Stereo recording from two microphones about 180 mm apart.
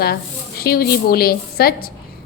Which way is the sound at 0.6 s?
60° left (ahead or behind).